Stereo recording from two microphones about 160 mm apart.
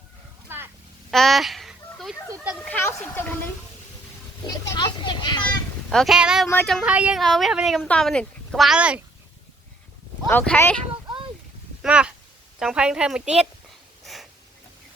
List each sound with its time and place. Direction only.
0.4 s a sound: 15° right (ahead or behind)
1.1 s a sound: centre (ahead or behind)
2.3 s speech: 10° right (ahead or behind)
2.6 s speech: 10° left (ahead or behind)
4.7 s a child's voice: 25° left (ahead or behind)
5.9 s speech: centre (ahead or behind)
6.5 s speech: 10° left (ahead or behind)
6.7 s speech: 10° right (ahead or behind)
10.2 s speech: 10° left (ahead or behind)
11.8 s a woman's voice: 5° right (ahead or behind)
14.0 s a sound: centre (ahead or behind)